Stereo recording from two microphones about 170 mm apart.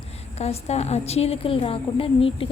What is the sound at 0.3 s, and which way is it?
A woman's voice, 40° left (ahead or behind).